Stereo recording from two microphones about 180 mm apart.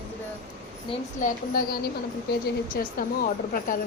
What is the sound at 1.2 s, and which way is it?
A woman's voice, 50° left (ahead or behind).